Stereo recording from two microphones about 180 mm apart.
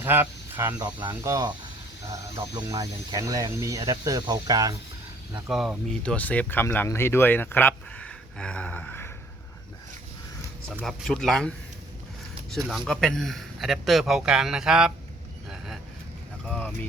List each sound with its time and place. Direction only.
0.0 s speech: 10° right (ahead or behind)
2.0 s speech: 30° right (ahead or behind)
2.6 s speech: 20° right (ahead or behind)
5.5 s speech: centre (ahead or behind)
10.8 s speech: centre (ahead or behind)
15.4 s vehicle: 5° right (ahead or behind)